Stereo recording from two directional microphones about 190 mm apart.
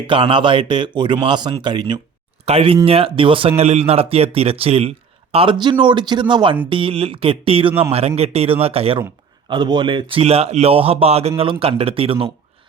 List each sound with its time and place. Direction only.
0.1 s speech: 25° right (ahead or behind)